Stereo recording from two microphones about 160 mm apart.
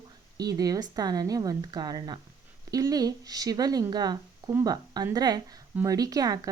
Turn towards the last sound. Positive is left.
turn(degrees=-25)  # may be behind; listen again after turning